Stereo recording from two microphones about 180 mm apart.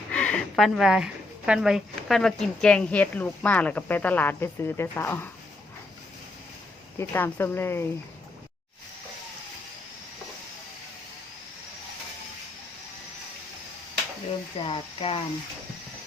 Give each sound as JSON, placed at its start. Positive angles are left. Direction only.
{"t": 0.1, "sound": "speech", "side_deg": 5}
{"t": 7.0, "sound": "speech", "side_deg": 10}
{"t": 14.6, "sound": "speech", "side_deg": 30}